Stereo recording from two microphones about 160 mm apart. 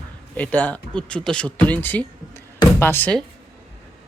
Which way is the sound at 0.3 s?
10° left (ahead or behind).